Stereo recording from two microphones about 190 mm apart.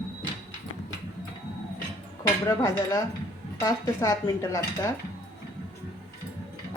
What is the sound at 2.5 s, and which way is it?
A woman's voice, 15° left (ahead or behind).